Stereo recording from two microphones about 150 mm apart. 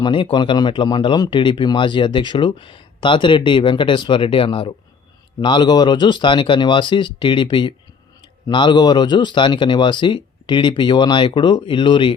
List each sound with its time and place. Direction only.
0.0 s speech: 35° left (ahead or behind)